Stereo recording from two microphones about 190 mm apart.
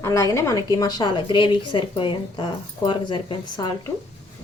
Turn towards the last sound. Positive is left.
turn(degrees=25)  # may be behind; listen again after turning